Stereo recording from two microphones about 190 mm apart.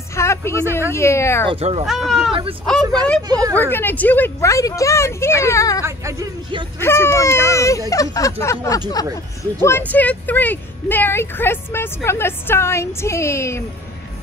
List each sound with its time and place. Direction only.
0.1 s a sound: 15° left (ahead or behind)
0.7 s speech: 15° left (ahead or behind)
1.5 s speech: 30° right (ahead or behind)
1.9 s speech: centre (ahead or behind)
3.2 s speech: 20° right (ahead or behind)
3.5 s speech: 10° left (ahead or behind)
5.9 s speech: 15° right (ahead or behind)
6.8 s speech: 15° left (ahead or behind)